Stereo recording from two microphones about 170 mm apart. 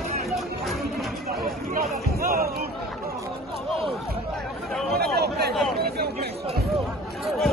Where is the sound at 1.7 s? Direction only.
60° right (ahead or behind).